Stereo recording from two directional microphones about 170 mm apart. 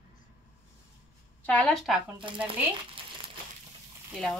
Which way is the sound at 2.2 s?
30° right (ahead or behind).